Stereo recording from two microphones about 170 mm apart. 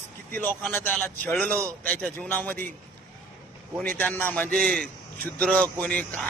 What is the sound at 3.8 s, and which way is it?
A man's voice, 10° left (ahead or behind).